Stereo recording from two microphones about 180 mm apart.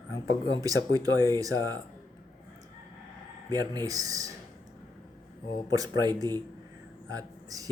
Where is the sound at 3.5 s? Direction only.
20° right (ahead or behind).